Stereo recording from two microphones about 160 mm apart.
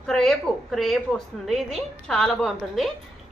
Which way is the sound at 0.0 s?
5° left (ahead or behind).